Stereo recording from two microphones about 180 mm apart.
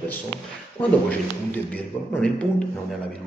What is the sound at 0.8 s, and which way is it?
Speech, 10° left (ahead or behind).